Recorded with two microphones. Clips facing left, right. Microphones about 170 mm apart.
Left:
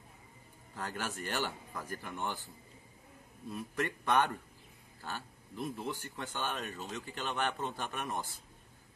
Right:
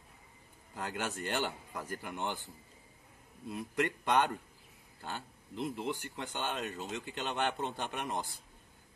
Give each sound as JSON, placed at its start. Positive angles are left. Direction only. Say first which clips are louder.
{"t": 0.7, "sound": "speech", "louder": "right 2 dB", "side_deg": -20}
{"t": 3.5, "sound": "speech", "louder": "right 3 dB", "side_deg": -15}